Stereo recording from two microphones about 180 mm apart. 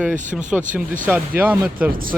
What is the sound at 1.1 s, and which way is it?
Speech, 10° right (ahead or behind).